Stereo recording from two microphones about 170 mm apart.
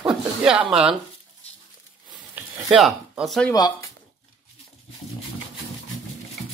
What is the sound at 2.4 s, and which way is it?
Speech, centre (ahead or behind).